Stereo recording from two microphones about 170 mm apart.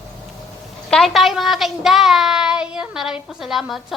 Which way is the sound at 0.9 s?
Centre (ahead or behind).